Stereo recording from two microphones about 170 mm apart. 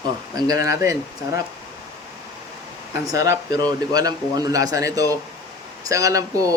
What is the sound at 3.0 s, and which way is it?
A man's voice, 20° right (ahead or behind).